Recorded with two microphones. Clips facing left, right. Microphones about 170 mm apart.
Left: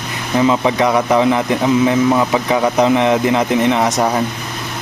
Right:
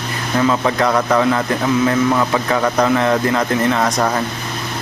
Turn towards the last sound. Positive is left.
turn(degrees=15)  # may be behind; listen again after turning